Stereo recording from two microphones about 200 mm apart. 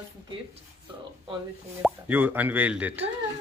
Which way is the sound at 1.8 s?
10° right (ahead or behind).